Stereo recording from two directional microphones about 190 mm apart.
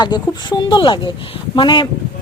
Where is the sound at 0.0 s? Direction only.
25° left (ahead or behind).